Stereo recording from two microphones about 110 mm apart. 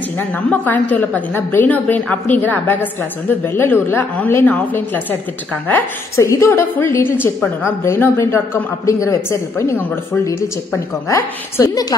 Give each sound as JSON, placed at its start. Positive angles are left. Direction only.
{"t": 0.2, "sound": "a woman's voice", "side_deg": 15}
{"t": 5.7, "sound": "a man's voice", "side_deg": 25}